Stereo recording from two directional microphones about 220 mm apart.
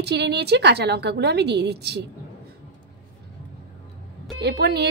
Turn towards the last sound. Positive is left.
turn(degrees=-45)  # may be behind; listen again after turning